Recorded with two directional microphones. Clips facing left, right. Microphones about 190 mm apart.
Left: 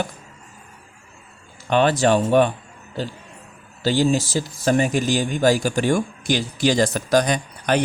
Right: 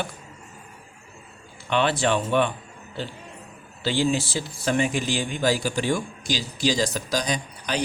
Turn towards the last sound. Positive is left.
turn(degrees=55)  # may be behind; listen again after turning